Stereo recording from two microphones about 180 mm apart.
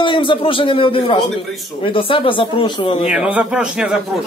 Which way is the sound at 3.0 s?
5° right (ahead or behind).